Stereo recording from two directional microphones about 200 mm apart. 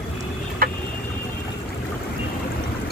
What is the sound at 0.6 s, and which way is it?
Vehicle, 45° right (ahead or behind).